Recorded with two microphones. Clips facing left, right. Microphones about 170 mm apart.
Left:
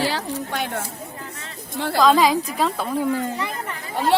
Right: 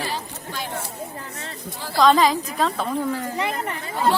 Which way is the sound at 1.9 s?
5° left (ahead or behind).